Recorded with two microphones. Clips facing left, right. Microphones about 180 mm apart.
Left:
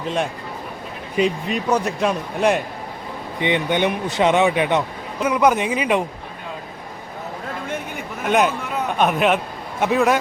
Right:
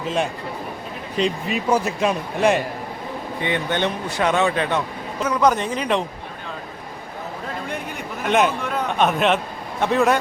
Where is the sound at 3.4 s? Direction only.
15° left (ahead or behind).